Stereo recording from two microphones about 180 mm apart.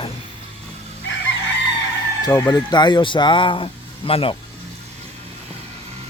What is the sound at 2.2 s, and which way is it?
Speech, 20° left (ahead or behind).